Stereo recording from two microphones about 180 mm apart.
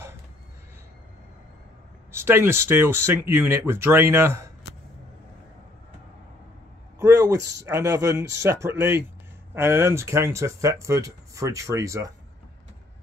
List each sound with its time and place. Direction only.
2.1 s speech: 10° right (ahead or behind)
7.0 s speech: 15° right (ahead or behind)